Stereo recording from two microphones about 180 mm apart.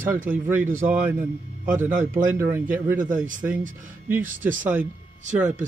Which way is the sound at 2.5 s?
10° right (ahead or behind).